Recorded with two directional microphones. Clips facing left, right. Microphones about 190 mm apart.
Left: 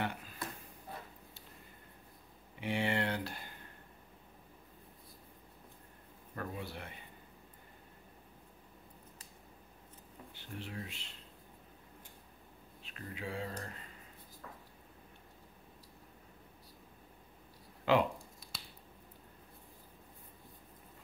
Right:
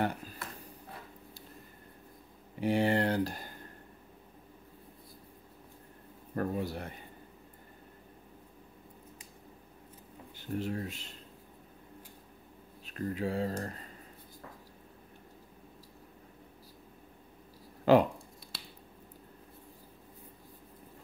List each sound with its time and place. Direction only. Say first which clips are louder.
0.0 s a sound: right 6 dB; 40° right (ahead or behind)
2.6 s a sound: right 6 dB; 40° right (ahead or behind)
6.3 s speech: right 9 dB; 40° right (ahead or behind)
10.3 s speech: right 10 dB; 45° right (ahead or behind)
12.8 s speech: right 10 dB; 40° right (ahead or behind)
17.9 s speech: right 7 dB; 40° right (ahead or behind)